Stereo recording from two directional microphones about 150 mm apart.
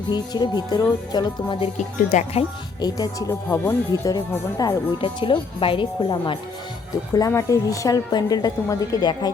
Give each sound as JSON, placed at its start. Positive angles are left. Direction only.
{"t": 0.1, "sound": "a woman's voice", "side_deg": 30}
{"t": 2.0, "sound": "speech", "side_deg": 50}
{"t": 2.8, "sound": "a woman's voice", "side_deg": 25}
{"t": 7.1, "sound": "a woman's voice", "side_deg": 20}